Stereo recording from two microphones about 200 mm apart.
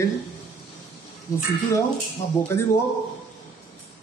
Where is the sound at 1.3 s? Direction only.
15° left (ahead or behind).